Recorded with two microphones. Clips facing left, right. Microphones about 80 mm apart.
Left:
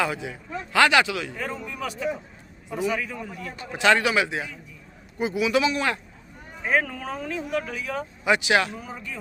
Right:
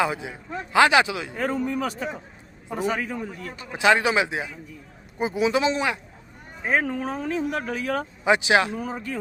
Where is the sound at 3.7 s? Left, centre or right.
Centre; by 8.0 s right.